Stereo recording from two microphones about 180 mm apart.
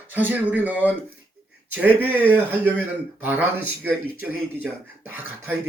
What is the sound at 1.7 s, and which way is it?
Speech, 10° right (ahead or behind).